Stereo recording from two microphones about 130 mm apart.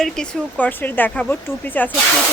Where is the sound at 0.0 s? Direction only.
10° left (ahead or behind).